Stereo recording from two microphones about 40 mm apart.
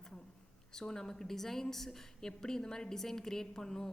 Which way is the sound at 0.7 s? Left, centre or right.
Centre.